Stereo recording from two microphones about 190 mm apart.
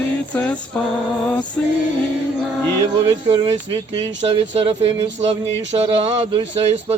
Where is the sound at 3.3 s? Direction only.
30° right (ahead or behind).